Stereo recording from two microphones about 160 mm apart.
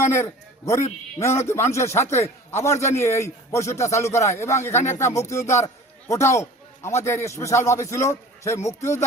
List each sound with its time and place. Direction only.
0.0 s a man's voice: 15° left (ahead or behind)